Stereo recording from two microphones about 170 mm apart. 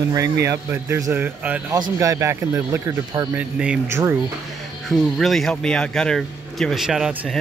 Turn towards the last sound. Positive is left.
turn(degrees=0)  # may be behind; listen again after turning